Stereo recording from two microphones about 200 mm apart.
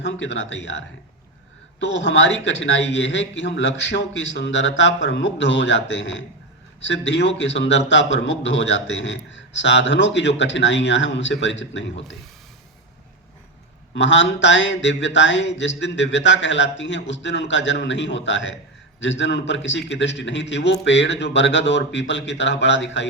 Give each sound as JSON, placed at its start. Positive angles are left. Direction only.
{"t": 0.0, "sound": "a man's voice", "side_deg": 65}
{"t": 13.9, "sound": "speech", "side_deg": 65}